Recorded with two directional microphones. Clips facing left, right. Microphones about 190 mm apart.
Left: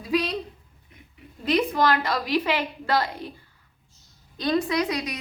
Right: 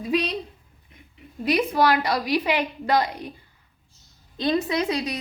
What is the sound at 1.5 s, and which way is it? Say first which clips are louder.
A woman's voice: right 1 dB; 10° right (ahead or behind).